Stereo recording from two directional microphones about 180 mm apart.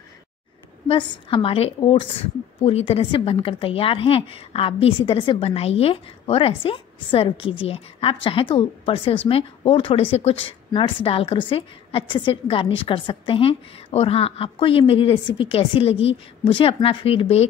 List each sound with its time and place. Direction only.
0.8 s a woman's voice: 25° left (ahead or behind)